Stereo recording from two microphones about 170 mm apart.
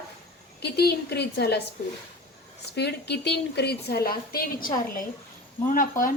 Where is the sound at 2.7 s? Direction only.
80° left; by 6.1 s 50° left (ahead or behind).